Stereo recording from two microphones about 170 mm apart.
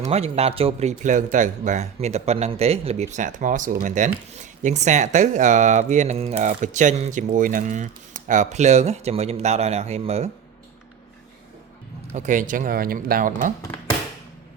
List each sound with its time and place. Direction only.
0.0 s speech: 35° right (ahead or behind)
12.1 s speech: 45° right (ahead or behind)